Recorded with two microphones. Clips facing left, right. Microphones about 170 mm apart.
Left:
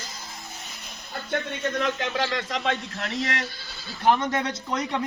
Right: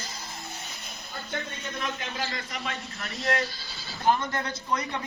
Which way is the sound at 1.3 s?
85° left.